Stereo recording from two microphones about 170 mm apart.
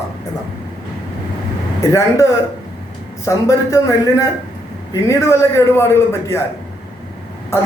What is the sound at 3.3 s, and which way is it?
A man's voice, 20° left (ahead or behind).